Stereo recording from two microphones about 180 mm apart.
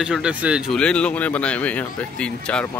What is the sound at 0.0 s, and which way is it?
Speech, 5° right (ahead or behind).